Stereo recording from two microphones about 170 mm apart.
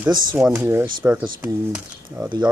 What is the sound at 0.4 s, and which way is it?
Speech, 15° right (ahead or behind).